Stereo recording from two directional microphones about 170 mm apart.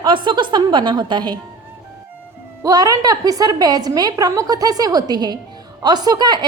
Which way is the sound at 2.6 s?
20° right (ahead or behind).